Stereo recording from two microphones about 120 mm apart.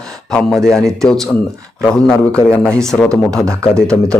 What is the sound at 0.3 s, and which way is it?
Speech, 5° left (ahead or behind).